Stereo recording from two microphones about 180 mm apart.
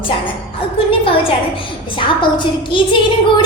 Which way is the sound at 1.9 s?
25° left (ahead or behind).